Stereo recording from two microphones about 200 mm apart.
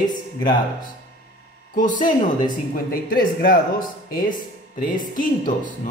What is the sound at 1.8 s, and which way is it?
Speech, 40° left (ahead or behind).